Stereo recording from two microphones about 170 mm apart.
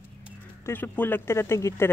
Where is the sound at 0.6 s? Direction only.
10° left (ahead or behind).